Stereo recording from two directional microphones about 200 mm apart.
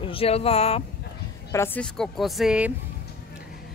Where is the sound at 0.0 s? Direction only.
30° left (ahead or behind).